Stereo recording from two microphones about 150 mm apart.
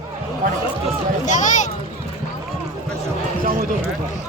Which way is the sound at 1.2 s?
55° left (ahead or behind).